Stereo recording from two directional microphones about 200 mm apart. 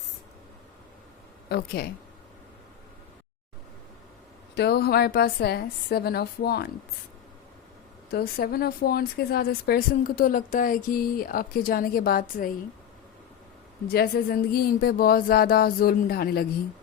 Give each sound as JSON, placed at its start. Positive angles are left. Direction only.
{"t": 1.5, "sound": "speech", "side_deg": 50}
{"t": 4.5, "sound": "speech", "side_deg": 55}
{"t": 8.1, "sound": "speech", "side_deg": 50}
{"t": 13.9, "sound": "speech", "side_deg": 50}